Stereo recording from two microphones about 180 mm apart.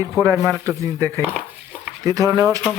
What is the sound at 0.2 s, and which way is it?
Speech, 15° right (ahead or behind).